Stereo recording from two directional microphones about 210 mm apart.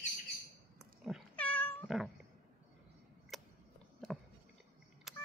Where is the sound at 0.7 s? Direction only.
Centre (ahead or behind).